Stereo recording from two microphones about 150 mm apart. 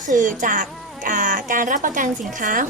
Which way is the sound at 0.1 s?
60° right (ahead or behind).